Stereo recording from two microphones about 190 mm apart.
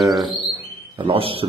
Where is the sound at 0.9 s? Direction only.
30° right (ahead or behind).